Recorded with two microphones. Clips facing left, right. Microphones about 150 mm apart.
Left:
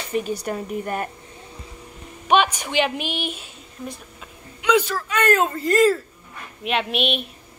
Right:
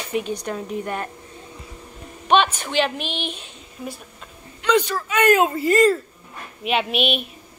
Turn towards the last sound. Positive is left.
turn(degrees=0)  # may be behind; listen again after turning